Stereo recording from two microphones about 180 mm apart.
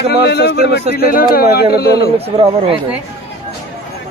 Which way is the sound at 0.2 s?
70° left (ahead or behind).